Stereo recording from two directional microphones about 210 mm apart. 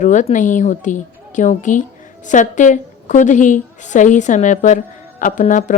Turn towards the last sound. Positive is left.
turn(degrees=35)  # may be behind; listen again after turning